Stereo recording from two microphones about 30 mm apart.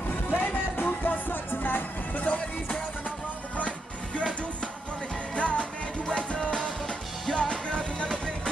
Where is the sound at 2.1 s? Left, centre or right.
Left.